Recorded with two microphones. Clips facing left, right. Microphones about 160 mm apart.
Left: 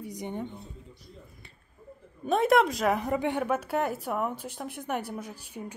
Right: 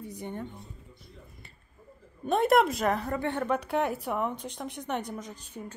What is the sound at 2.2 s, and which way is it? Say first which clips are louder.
Speech: even; centre (ahead or behind).